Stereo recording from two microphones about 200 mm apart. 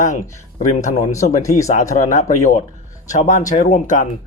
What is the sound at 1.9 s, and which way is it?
Speech, 35° left (ahead or behind).